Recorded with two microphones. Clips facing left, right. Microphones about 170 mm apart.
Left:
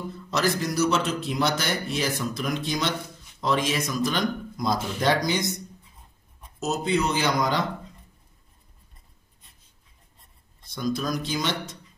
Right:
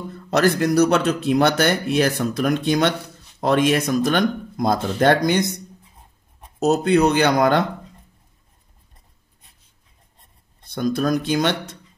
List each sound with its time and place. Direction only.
0.1 s speech: 60° right (ahead or behind)
6.6 s speech: 60° right (ahead or behind)
10.6 s speech: 60° right (ahead or behind)